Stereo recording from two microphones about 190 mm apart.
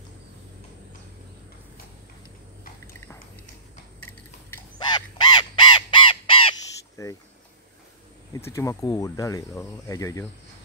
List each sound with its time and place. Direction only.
4.9 s crow: 25° left (ahead or behind)
7.0 s speech: 15° left (ahead or behind)
8.5 s speech: 15° left (ahead or behind)